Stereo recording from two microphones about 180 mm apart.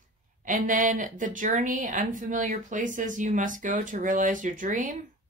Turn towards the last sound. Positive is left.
turn(degrees=-45)  # may be behind; listen again after turning